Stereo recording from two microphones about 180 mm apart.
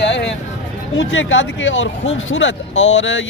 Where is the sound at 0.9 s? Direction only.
90° left.